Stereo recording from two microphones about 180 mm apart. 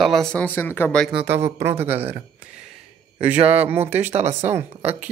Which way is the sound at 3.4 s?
35° right (ahead or behind).